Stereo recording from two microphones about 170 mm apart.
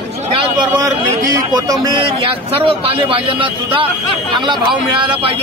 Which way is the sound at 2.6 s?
35° right (ahead or behind).